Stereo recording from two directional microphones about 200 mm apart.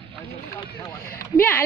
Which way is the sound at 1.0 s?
50° left (ahead or behind).